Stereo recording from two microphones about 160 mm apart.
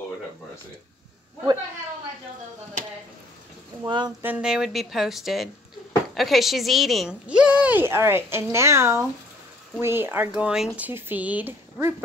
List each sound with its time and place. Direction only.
3.8 s speech: 25° right (ahead or behind)
4.2 s a woman's voice: 10° right (ahead or behind)